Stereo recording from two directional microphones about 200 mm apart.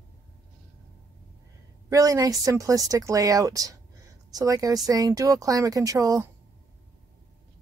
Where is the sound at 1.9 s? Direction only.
15° right (ahead or behind).